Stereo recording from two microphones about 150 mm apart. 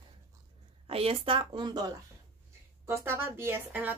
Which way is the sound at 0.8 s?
40° right (ahead or behind).